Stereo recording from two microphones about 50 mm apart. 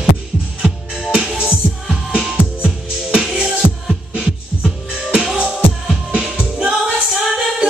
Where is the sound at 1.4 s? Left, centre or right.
Centre.